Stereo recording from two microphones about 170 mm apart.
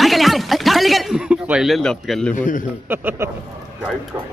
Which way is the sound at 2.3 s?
50° left (ahead or behind).